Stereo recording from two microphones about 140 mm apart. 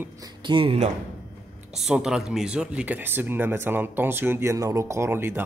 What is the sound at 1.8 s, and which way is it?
Speech, 5° right (ahead or behind).